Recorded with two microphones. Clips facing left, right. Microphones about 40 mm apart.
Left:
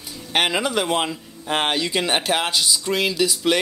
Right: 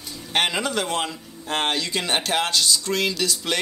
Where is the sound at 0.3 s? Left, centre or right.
Centre.